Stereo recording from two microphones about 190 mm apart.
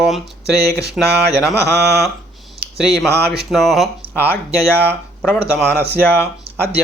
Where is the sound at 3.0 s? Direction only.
60° right (ahead or behind).